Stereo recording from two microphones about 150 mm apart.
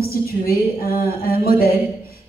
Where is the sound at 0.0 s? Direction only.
85° left.